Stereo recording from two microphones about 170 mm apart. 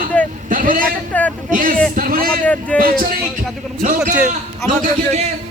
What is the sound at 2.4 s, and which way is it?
Speech, 10° left (ahead or behind).